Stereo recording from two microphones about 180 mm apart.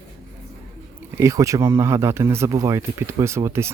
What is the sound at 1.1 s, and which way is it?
Speech, 15° right (ahead or behind).